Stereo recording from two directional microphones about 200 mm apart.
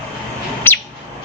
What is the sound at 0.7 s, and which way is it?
Bird, 10° left (ahead or behind).